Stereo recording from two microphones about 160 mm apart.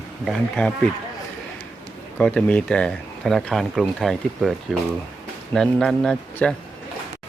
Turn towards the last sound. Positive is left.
turn(degrees=5)  # may be behind; listen again after turning